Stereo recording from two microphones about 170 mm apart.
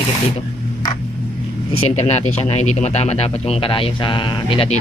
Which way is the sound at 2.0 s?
40° left (ahead or behind).